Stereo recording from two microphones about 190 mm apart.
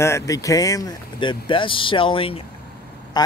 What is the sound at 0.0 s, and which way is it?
Speech, 15° left (ahead or behind).